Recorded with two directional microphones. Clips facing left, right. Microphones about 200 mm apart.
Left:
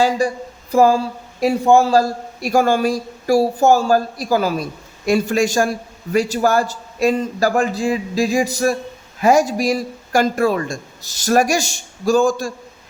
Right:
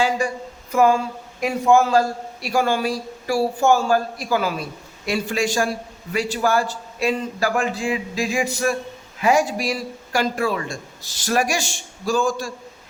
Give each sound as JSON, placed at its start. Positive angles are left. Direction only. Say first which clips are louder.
{"t": 0.2, "sound": "a man's voice", "louder": "left 5 dB", "side_deg": 35}